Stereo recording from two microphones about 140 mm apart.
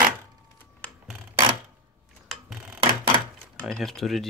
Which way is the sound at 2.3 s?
5° right (ahead or behind).